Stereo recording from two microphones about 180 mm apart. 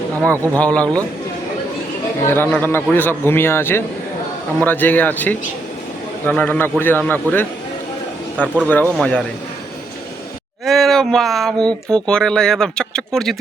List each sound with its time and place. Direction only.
0.6 s a man's voice: 5° left (ahead or behind)
2.2 s a man's voice: 10° left (ahead or behind)
8.6 s a man's voice: 5° left (ahead or behind)
10.7 s speech: centre (ahead or behind)